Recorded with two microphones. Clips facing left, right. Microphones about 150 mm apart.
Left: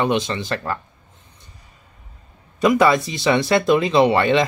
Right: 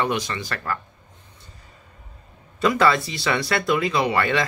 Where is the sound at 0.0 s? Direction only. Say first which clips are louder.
Left 4 dB; 25° left (ahead or behind).